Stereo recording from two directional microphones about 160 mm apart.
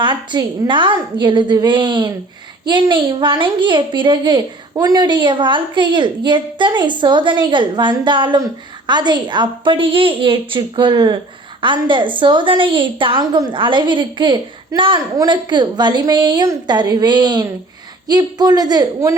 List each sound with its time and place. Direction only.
0.0 s a woman's voice: 30° right (ahead or behind)